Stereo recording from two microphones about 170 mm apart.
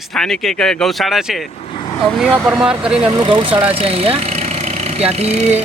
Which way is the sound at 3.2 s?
25° right (ahead or behind).